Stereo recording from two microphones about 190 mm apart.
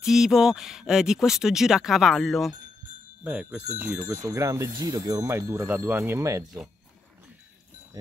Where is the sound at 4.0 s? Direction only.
15° right (ahead or behind).